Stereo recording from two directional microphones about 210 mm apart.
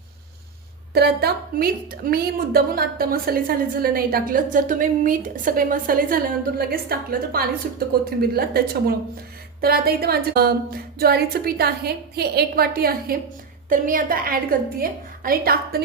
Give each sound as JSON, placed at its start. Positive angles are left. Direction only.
{"t": 0.9, "sound": "a woman's voice", "side_deg": -50}